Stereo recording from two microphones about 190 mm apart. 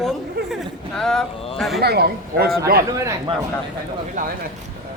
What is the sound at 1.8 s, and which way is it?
Speech, 55° right (ahead or behind).